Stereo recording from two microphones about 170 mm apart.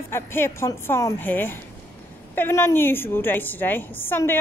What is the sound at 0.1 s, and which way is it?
A woman's voice, 15° left (ahead or behind).